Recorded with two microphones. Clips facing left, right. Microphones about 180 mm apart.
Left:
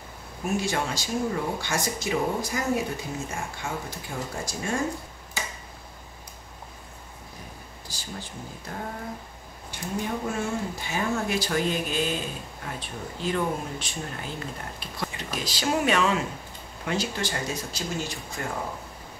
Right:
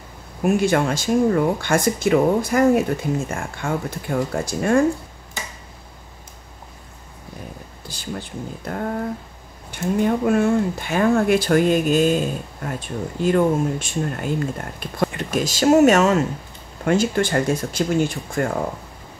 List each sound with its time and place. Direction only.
0.4 s speech: 60° right (ahead or behind)
7.9 s speech: 60° right (ahead or behind)